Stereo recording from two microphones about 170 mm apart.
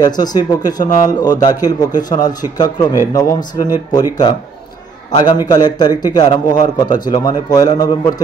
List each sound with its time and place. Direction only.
0.0 s a man's voice: 25° left (ahead or behind)